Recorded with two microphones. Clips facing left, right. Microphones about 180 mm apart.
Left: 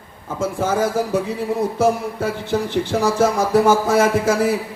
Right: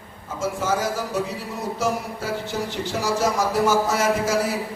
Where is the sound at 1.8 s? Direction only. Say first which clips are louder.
Left 5 dB; 55° left (ahead or behind).